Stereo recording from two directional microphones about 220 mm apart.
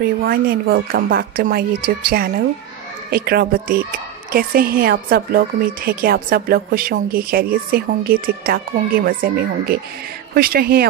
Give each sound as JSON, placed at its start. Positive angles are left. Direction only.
{"t": 0.0, "sound": "a woman's voice", "side_deg": -45}